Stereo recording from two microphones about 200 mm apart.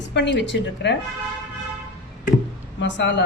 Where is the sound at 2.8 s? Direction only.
60° left (ahead or behind).